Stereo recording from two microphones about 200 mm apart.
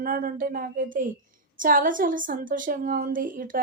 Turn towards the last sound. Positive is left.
turn(degrees=-40)  # may be behind; listen again after turning